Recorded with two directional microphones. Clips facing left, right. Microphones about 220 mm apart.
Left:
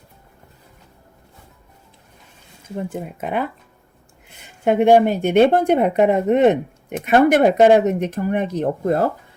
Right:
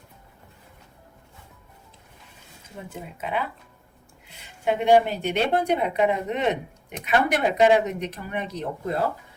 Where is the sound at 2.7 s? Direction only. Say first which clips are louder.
Left 10 dB; 50° left (ahead or behind).